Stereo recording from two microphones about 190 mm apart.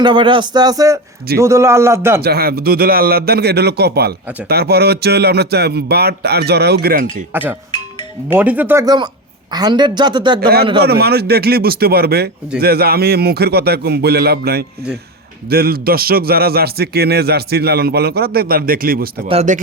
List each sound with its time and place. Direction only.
0.0 s a man's voice: 25° right (ahead or behind)
2.2 s a man's voice: 55° right (ahead or behind)
8.3 s a man's voice: 10° right (ahead or behind)
10.4 s a man's voice: 55° right (ahead or behind)
19.3 s speech: 35° right (ahead or behind)